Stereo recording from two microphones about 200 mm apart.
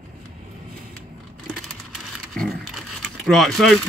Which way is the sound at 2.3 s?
Centre (ahead or behind).